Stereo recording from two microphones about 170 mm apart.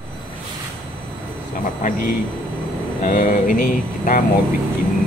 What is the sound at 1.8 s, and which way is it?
Speech, 50° left (ahead or behind).